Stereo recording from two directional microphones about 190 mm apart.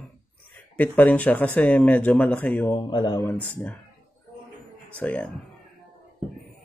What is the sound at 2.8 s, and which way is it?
Speech, 25° left (ahead or behind).